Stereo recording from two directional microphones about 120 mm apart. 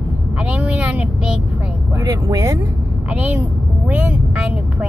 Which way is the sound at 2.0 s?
30° right (ahead or behind).